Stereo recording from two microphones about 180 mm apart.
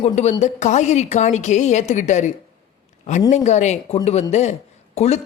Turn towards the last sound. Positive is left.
turn(degrees=35)  # may be behind; listen again after turning